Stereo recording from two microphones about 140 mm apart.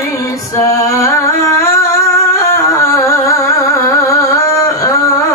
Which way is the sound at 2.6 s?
20° left (ahead or behind).